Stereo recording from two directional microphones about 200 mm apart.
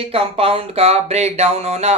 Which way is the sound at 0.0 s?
30° right (ahead or behind).